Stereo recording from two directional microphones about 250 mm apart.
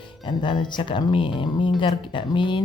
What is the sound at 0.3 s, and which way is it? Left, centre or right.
Speech, centre.